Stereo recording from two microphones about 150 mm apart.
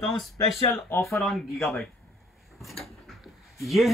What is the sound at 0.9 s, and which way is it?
Speech, 20° left (ahead or behind).